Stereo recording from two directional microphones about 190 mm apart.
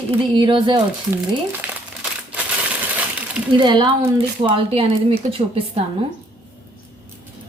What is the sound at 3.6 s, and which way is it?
A woman's voice, 25° right (ahead or behind).